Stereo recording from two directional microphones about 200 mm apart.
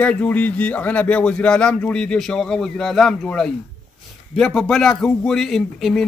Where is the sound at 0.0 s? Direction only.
5° left (ahead or behind).